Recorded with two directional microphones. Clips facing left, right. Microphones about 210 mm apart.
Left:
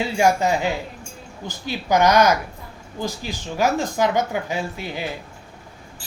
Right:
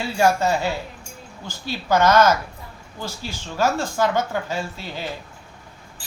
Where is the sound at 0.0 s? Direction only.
15° left (ahead or behind).